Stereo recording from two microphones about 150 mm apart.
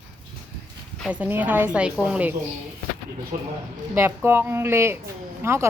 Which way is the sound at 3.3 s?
70° right (ahead or behind).